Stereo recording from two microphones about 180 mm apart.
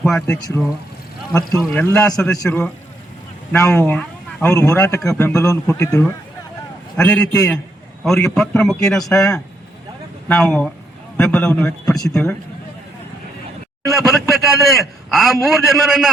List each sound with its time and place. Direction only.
0.0 s a man's voice: 5° left (ahead or behind)
1.5 s a man's voice: 10° left (ahead or behind)
13.9 s a man's voice: centre (ahead or behind)